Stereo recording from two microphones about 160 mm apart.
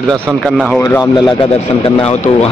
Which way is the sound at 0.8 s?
25° left (ahead or behind).